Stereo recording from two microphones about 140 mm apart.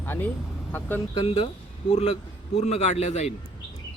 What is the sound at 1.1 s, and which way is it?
Speech, 40° left (ahead or behind).